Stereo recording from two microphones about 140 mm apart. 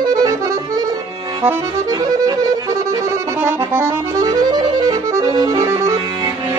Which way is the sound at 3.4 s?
20° right (ahead or behind).